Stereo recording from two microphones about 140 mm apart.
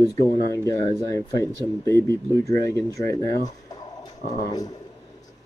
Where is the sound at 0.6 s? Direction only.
20° left (ahead or behind).